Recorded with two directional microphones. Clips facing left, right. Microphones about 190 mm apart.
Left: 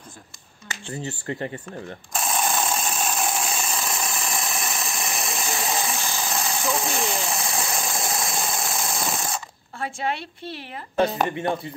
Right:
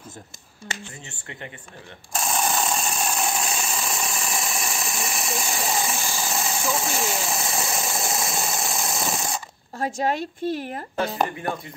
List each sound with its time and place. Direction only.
0.8 s speech: 35° left (ahead or behind)
2.1 s engine: centre (ahead or behind)
9.8 s a woman's voice: 40° right (ahead or behind)
11.2 s speech: 25° left (ahead or behind)